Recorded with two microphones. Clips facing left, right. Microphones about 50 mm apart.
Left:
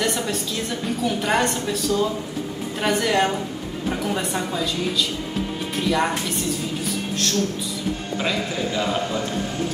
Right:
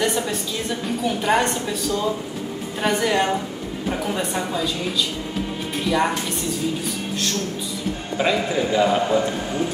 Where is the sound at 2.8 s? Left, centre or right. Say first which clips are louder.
Even; centre.